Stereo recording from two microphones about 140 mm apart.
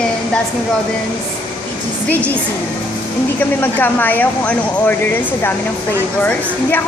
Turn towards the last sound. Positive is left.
turn(degrees=10)  # may be behind; listen again after turning